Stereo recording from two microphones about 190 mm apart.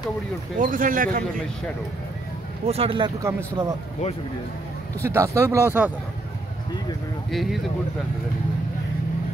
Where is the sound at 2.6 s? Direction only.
30° right (ahead or behind).